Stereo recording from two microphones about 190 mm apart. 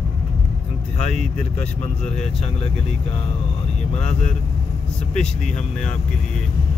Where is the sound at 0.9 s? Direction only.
35° left (ahead or behind).